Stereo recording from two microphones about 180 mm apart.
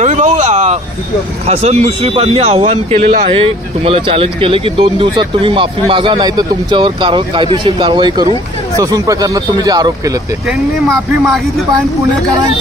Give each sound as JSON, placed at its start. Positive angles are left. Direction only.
{"t": 0.0, "sound": "vehicle", "side_deg": -40}
{"t": 1.4, "sound": "speech", "side_deg": -35}
{"t": 3.0, "sound": "speech", "side_deg": -55}
{"t": 3.3, "sound": "a man's voice", "side_deg": -30}
{"t": 10.5, "sound": "speech", "side_deg": 0}